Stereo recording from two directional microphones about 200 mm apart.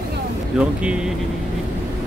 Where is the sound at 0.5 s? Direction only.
5° right (ahead or behind).